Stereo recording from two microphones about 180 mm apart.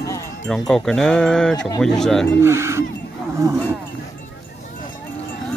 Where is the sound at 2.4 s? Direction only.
15° right (ahead or behind).